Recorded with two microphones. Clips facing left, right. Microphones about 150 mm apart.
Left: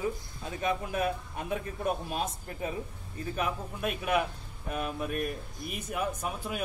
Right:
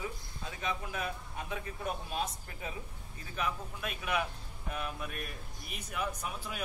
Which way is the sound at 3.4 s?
50° left (ahead or behind).